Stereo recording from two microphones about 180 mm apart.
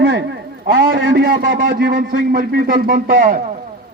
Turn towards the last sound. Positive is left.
turn(degrees=-50)  # may be behind; listen again after turning